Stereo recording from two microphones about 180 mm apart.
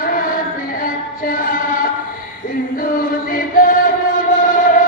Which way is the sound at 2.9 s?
50° left (ahead or behind).